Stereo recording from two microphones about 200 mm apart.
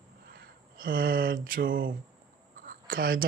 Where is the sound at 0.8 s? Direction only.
45° right (ahead or behind).